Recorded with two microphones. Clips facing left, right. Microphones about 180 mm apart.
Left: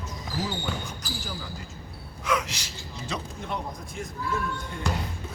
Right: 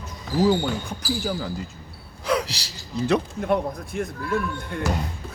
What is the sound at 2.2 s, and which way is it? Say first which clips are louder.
Speech: right 4 dB; 35° right (ahead or behind).